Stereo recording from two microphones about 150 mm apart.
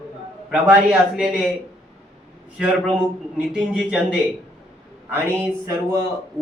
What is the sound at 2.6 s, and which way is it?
A man's voice, 10° right (ahead or behind).